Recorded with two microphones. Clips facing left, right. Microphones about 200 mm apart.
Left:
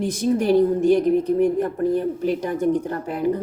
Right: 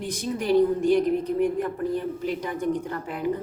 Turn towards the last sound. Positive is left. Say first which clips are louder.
# left 6 dB
turn(degrees=40)  # may be behind; listen again after turning